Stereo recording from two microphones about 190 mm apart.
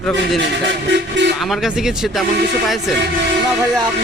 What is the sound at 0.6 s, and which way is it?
Train, 70° right (ahead or behind).